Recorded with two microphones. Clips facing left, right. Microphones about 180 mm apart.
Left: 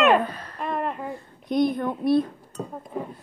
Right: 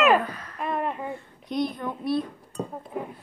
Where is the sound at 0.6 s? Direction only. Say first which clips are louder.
Even; centre (ahead or behind).